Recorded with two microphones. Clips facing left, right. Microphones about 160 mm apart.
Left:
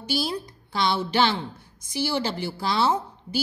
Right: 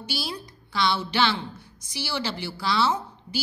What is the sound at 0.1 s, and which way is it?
A woman's voice, 45° left (ahead or behind).